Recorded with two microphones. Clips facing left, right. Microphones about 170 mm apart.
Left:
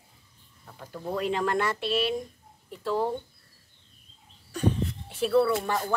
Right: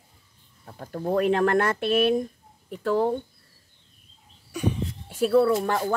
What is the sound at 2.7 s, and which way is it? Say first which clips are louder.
Speech: right 5 dB; 65° right (ahead or behind).